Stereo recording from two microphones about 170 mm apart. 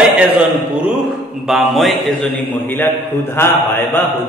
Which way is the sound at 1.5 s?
Centre (ahead or behind).